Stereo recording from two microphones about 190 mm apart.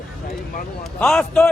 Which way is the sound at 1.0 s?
5° left (ahead or behind).